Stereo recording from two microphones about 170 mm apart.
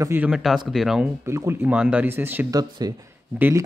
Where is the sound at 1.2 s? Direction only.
15° right (ahead or behind).